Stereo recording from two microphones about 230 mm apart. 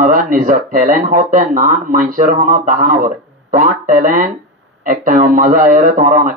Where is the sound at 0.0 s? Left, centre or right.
Right.